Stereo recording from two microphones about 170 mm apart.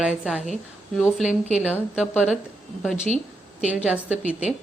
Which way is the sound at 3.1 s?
40° right (ahead or behind).